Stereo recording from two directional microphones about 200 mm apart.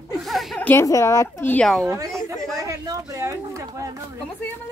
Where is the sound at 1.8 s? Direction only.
15° right (ahead or behind).